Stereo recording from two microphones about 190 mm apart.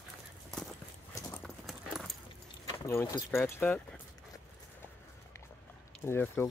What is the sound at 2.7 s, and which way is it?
Keys jangling, 15° left (ahead or behind).